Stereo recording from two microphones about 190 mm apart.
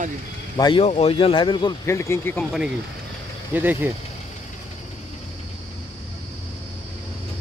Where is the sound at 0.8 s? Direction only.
35° left (ahead or behind); by 2.5 s 10° left (ahead or behind).